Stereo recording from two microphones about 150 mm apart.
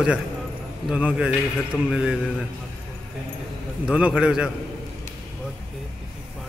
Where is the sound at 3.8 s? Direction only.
5° right (ahead or behind).